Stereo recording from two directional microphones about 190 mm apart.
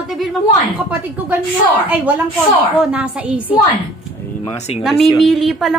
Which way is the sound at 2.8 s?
5° right (ahead or behind).